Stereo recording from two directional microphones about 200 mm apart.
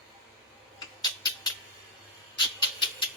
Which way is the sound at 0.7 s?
20° left (ahead or behind).